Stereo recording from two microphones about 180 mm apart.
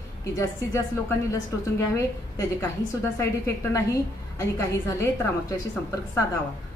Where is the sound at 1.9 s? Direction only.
15° left (ahead or behind).